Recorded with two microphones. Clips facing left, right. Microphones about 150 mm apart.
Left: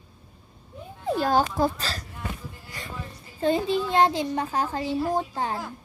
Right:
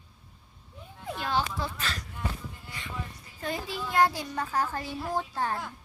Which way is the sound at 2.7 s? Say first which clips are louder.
Left 4 dB; 40° left (ahead or behind).